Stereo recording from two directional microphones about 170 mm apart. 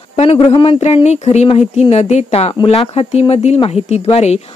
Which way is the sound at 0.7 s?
40° left (ahead or behind).